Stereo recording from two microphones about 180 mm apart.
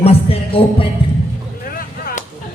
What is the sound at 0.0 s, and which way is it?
Music, 35° left (ahead or behind).